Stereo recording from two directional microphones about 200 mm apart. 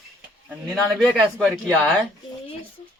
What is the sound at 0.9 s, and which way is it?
A man's voice, 5° right (ahead or behind).